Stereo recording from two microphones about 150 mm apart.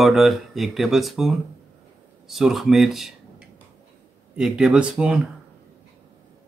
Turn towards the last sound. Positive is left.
turn(degrees=-5)  # may be behind; listen again after turning